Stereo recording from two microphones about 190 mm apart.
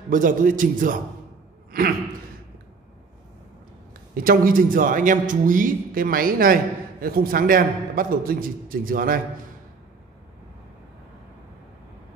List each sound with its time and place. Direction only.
0.1 s a man's voice: 45° right (ahead or behind)
4.2 s a man's voice: 50° right (ahead or behind)